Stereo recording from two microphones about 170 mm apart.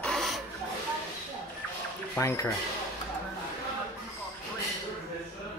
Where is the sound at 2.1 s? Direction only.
15° left (ahead or behind).